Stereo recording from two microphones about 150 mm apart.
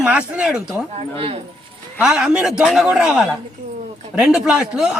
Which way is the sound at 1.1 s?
40° right (ahead or behind).